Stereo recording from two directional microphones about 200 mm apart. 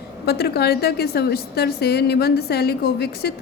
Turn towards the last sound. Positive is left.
turn(degrees=55)  # may be behind; listen again after turning